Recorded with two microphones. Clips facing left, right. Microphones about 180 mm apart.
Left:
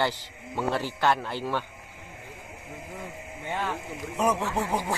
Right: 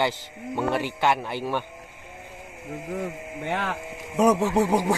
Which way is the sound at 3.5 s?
70° right (ahead or behind).